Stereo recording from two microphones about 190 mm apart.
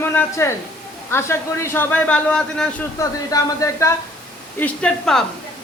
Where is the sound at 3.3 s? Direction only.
20° left (ahead or behind).